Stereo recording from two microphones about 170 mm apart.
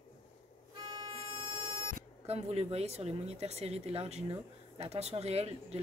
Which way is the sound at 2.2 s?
35° right (ahead or behind).